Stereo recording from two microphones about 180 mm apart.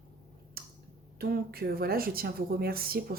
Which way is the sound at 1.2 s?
60° right (ahead or behind).